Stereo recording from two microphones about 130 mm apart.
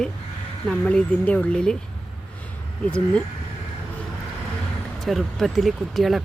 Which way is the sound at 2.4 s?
10° left (ahead or behind).